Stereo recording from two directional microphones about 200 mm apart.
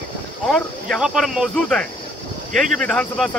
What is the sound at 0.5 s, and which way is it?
Speech, centre (ahead or behind).